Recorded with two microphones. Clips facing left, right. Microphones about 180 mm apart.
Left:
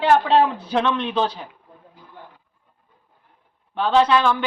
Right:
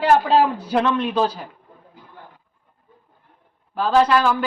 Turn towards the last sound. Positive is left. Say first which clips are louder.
# even
turn(degrees=-5)  # may be behind; listen again after turning